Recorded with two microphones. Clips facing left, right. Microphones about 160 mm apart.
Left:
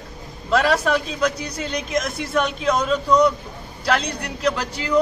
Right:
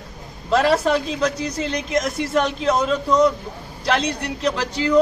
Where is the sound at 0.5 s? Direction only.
25° right (ahead or behind).